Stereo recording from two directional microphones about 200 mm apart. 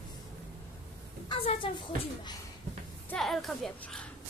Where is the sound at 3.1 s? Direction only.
Centre (ahead or behind).